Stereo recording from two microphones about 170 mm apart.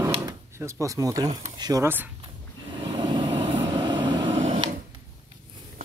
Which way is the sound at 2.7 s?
30° right (ahead or behind).